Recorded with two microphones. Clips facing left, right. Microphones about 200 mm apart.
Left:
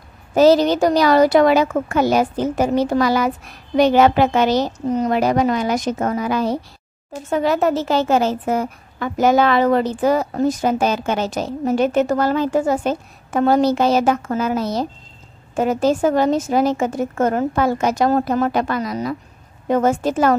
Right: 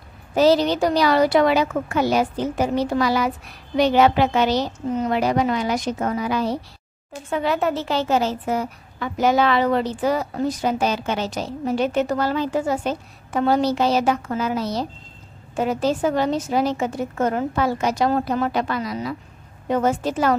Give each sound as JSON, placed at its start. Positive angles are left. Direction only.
{"t": 0.3, "sound": "a woman's voice", "side_deg": 45}